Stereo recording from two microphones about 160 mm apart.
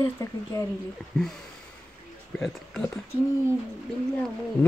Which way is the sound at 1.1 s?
5° left (ahead or behind).